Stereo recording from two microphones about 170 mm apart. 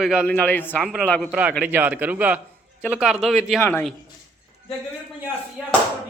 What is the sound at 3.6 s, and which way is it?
Speech, 15° left (ahead or behind).